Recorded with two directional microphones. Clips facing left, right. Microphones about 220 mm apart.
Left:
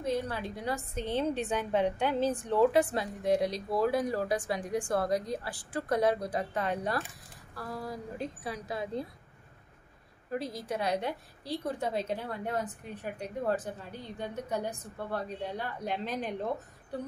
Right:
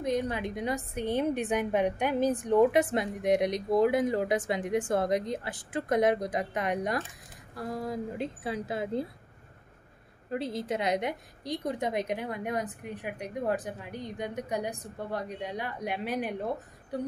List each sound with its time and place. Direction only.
0.0 s a woman's voice: 20° right (ahead or behind)
10.3 s a woman's voice: 25° right (ahead or behind)